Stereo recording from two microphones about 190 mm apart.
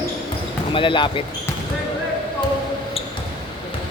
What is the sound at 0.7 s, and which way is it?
Speech, 25° left (ahead or behind).